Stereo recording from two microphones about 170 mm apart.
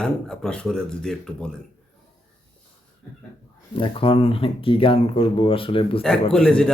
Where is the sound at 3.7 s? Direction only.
30° left (ahead or behind).